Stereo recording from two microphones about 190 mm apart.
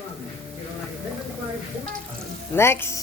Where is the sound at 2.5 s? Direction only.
10° left (ahead or behind).